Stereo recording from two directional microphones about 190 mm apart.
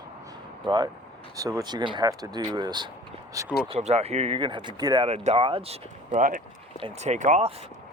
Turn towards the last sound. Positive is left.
turn(degrees=-35)  # may be behind; listen again after turning